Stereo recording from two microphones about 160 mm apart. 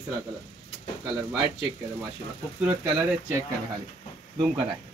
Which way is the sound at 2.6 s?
5° right (ahead or behind).